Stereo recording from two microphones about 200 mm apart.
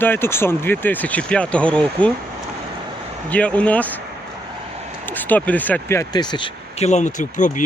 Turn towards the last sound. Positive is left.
turn(degrees=40)  # may be behind; listen again after turning